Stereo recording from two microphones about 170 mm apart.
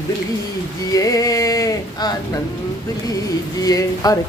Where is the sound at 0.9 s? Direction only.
20° left (ahead or behind).